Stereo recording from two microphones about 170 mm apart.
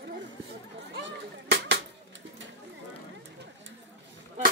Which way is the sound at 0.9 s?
90° right.